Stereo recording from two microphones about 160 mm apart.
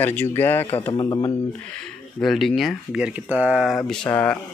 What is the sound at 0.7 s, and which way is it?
Speech, 35° left (ahead or behind).